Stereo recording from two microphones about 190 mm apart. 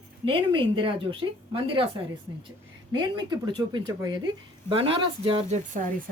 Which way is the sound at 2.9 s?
25° right (ahead or behind).